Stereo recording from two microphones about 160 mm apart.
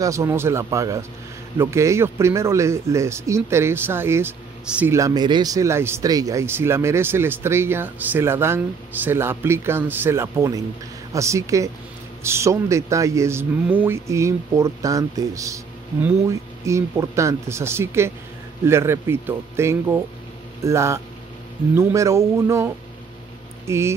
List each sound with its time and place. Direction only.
0.0 s speech: 20° right (ahead or behind)
4.9 s speech: 25° right (ahead or behind)
23.7 s speech: 15° right (ahead or behind)